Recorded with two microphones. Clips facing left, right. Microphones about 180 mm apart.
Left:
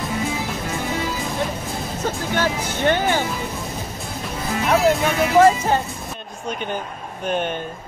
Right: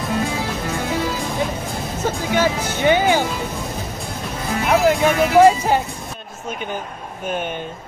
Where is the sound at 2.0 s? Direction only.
5° right (ahead or behind).